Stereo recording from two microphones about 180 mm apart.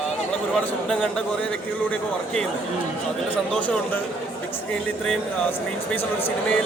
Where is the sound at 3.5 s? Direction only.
10° left (ahead or behind).